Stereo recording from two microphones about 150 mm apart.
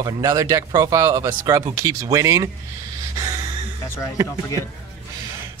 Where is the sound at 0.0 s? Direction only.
25° right (ahead or behind).